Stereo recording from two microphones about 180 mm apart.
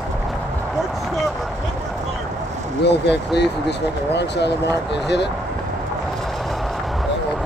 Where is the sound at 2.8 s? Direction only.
70° left (ahead or behind).